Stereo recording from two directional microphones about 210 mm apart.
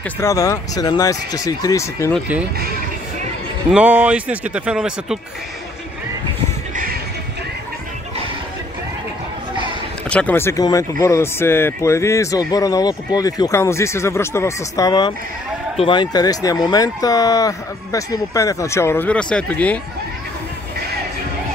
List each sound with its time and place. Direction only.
0.2 s speech: 15° left (ahead or behind)
2.1 s speech: 5° right (ahead or behind)
3.7 s speech: 5° right (ahead or behind)
6.7 s music: 40° right (ahead or behind)
10.0 s speech: 5° left (ahead or behind)